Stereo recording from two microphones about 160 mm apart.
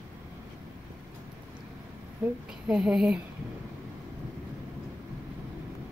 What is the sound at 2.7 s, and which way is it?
Speech, 5° right (ahead or behind).